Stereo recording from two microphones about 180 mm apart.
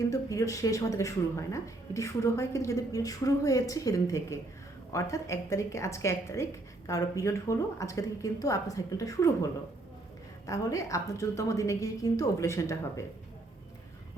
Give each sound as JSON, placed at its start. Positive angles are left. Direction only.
{"t": 0.1, "sound": "a woman's voice", "side_deg": 20}